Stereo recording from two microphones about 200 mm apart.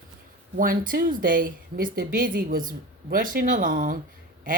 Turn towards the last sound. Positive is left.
turn(degrees=-40)  # may be behind; listen again after turning